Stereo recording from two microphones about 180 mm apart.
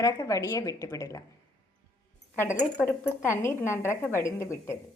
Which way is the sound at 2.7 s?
10° left (ahead or behind).